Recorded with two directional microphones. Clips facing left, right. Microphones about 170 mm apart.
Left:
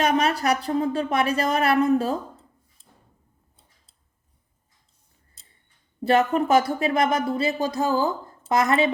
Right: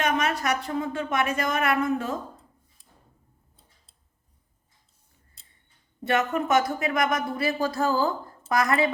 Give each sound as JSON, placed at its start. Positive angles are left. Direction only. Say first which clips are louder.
{"t": 0.0, "sound": "speech", "louder": "left 4 dB", "side_deg": 35}
{"t": 6.0, "sound": "speech", "louder": "left 5 dB", "side_deg": 30}